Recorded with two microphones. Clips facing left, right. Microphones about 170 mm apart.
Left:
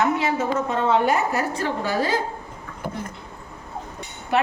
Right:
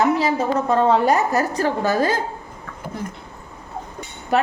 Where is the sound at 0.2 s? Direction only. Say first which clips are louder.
Right 3 dB; 35° right (ahead or behind).